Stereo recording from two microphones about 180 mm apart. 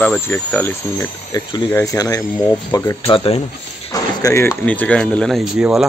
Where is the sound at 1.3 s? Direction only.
25° left (ahead or behind).